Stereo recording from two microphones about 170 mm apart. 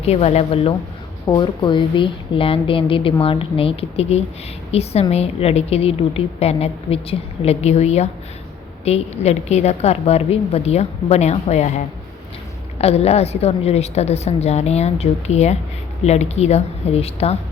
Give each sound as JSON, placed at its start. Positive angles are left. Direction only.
{"t": 0.0, "sound": "a woman's voice", "side_deg": 40}
{"t": 1.3, "sound": "a woman's voice", "side_deg": 25}
{"t": 12.8, "sound": "a woman's voice", "side_deg": 35}